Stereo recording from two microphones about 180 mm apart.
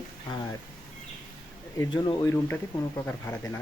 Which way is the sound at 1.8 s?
20° left (ahead or behind).